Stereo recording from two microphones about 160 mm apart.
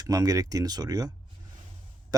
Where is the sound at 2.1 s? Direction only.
25° right (ahead or behind).